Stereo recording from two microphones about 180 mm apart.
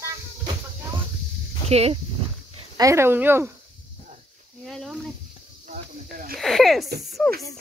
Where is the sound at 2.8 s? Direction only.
15° right (ahead or behind).